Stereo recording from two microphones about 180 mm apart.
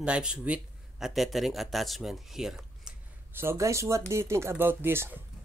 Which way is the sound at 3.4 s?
15° right (ahead or behind).